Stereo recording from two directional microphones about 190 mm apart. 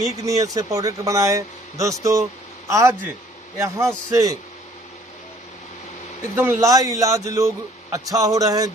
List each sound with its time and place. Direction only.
0.0 s a man's voice: 15° right (ahead or behind)
6.3 s a man's voice: 15° right (ahead or behind)